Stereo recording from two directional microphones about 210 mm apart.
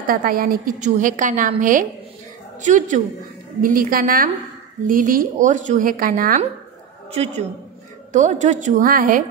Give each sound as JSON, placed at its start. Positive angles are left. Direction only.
{"t": 0.0, "sound": "a woman's voice", "side_deg": -40}
{"t": 8.1, "sound": "a woman's voice", "side_deg": -35}